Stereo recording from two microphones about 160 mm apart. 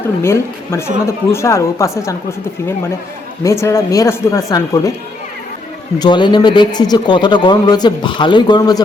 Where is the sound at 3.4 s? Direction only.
20° left (ahead or behind).